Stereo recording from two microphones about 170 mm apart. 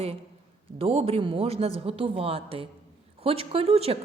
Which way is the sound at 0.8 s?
35° right (ahead or behind).